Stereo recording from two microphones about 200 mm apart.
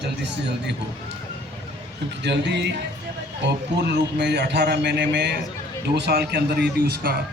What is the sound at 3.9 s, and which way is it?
A man's voice, 60° right (ahead or behind).